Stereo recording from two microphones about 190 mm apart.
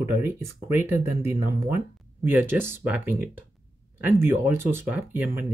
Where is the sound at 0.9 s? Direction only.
15° right (ahead or behind).